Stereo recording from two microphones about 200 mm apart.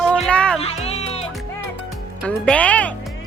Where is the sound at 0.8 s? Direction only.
35° left (ahead or behind).